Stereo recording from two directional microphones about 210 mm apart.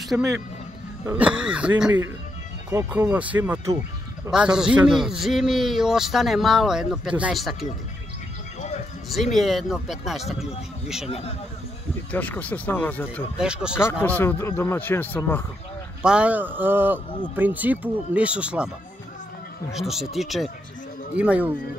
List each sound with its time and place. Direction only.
0.1 s speech: 5° right (ahead or behind)
9.1 s speech: centre (ahead or behind)
11.1 s speech: 30° left (ahead or behind)
12.1 s a man's voice: 5° left (ahead or behind)
13.4 s speech: 5° right (ahead or behind)
13.7 s a man's voice: 10° left (ahead or behind)
16.0 s speech: 5° right (ahead or behind)
19.7 s speech: centre (ahead or behind)